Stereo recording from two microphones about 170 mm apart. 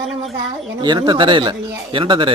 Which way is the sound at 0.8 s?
25° right (ahead or behind).